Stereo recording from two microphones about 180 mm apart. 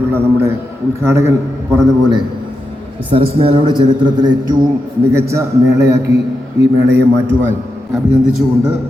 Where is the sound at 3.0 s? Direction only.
30° right (ahead or behind).